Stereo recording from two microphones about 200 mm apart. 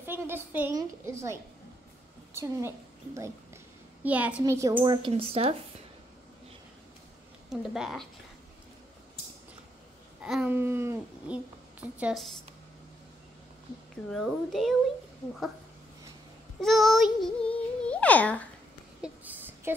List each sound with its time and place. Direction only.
0.0 s a woman's voice: 10° right (ahead or behind)
4.0 s a child's voice: 5° right (ahead or behind); by 5.6 s 30° right (ahead or behind)
7.4 s a child's voice: centre (ahead or behind)
10.2 s a woman's voice: 5° right (ahead or behind)
14.1 s a child's voice: centre (ahead or behind)
16.6 s a child's voice: centre (ahead or behind)
18.9 s a sound: 10° right (ahead or behind)